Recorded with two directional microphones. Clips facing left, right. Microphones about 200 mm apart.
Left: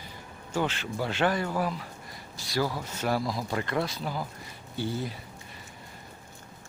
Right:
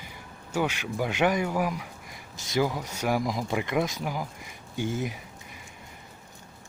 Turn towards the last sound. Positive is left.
turn(degrees=-15)  # may be behind; listen again after turning